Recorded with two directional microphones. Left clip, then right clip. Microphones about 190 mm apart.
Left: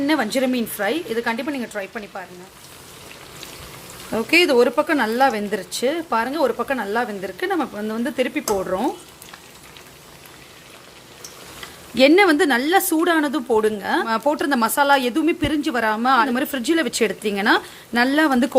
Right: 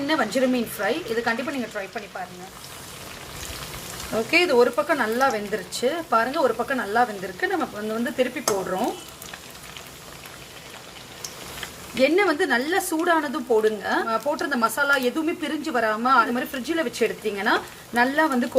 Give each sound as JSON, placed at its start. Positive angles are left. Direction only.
{"t": 0.1, "sound": "speech", "side_deg": 40}
{"t": 4.3, "sound": "speech", "side_deg": 45}
{"t": 11.9, "sound": "a woman's voice", "side_deg": 45}